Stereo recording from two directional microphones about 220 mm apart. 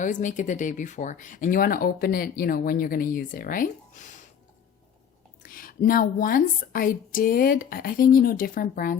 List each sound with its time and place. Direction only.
0.0 s speech: 35° left (ahead or behind)
5.4 s speech: 40° left (ahead or behind)